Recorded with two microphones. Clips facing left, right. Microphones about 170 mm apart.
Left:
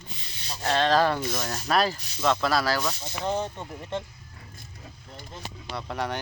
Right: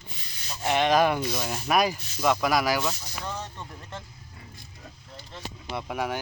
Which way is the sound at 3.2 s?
30° left (ahead or behind).